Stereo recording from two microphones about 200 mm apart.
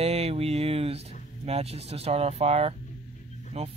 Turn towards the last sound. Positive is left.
turn(degrees=-30)  # may be behind; listen again after turning